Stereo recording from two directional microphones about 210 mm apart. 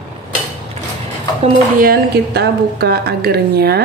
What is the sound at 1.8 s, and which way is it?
Speech, 45° right (ahead or behind).